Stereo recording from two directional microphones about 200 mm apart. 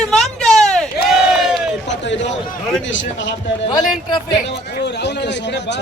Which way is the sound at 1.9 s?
65° left (ahead or behind).